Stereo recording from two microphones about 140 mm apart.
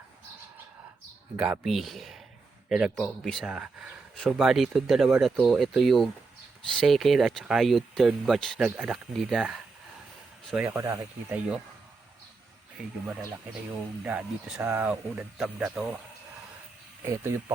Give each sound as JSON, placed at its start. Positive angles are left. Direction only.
{"t": 1.4, "sound": "speech", "side_deg": -5}
{"t": 10.5, "sound": "speech", "side_deg": -15}
{"t": 14.0, "sound": "speech", "side_deg": -10}
{"t": 17.1, "sound": "speech", "side_deg": -20}